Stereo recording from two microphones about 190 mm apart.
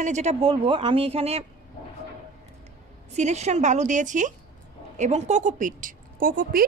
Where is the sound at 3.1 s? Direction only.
35° right (ahead or behind).